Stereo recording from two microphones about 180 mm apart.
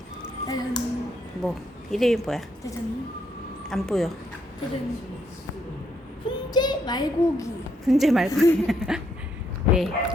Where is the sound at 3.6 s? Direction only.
Centre (ahead or behind).